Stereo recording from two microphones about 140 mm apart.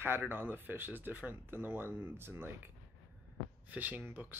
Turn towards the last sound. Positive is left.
turn(degrees=-15)  # may be behind; listen again after turning